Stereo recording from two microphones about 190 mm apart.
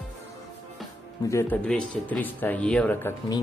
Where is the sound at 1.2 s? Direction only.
15° left (ahead or behind).